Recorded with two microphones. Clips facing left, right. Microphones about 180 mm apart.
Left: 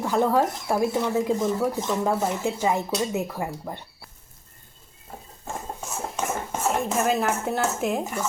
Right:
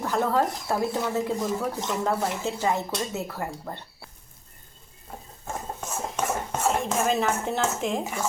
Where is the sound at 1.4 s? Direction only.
Centre (ahead or behind).